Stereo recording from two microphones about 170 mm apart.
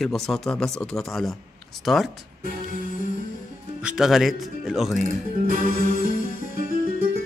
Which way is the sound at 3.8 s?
5° right (ahead or behind).